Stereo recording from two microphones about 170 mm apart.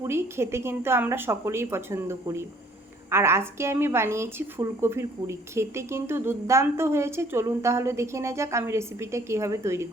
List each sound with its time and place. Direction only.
0.0 s a woman's voice: 15° right (ahead or behind)